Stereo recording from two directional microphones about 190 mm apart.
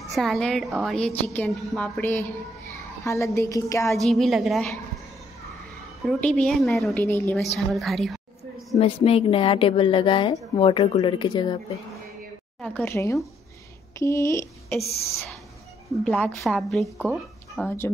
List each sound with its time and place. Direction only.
0.1 s a woman's voice: centre (ahead or behind)
3.3 s speech: 15° left (ahead or behind)
3.9 s a woman's voice: centre (ahead or behind)
6.0 s a woman's voice: 5° left (ahead or behind)
7.5 s a sound: centre (ahead or behind)
8.7 s a woman's voice: 30° left (ahead or behind)
12.5 s speech: 10° left (ahead or behind)
16.0 s a woman's voice: 5° left (ahead or behind)